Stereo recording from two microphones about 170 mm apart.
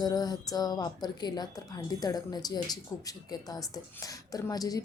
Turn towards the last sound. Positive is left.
turn(degrees=20)  # may be behind; listen again after turning